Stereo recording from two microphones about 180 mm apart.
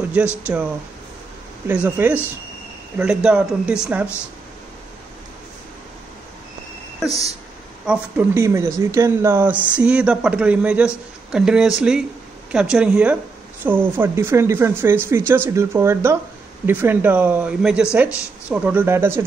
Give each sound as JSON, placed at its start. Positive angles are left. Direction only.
{"t": 0.1, "sound": "speech", "side_deg": -10}
{"t": 1.7, "sound": "speech", "side_deg": -10}
{"t": 7.1, "sound": "speech", "side_deg": 20}
{"t": 7.8, "sound": "speech", "side_deg": -10}